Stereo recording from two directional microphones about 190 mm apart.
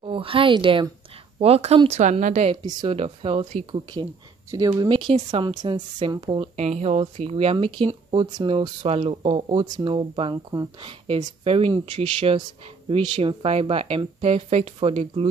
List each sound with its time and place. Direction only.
0.0 s speech: 30° right (ahead or behind)
2.5 s speech: 25° right (ahead or behind)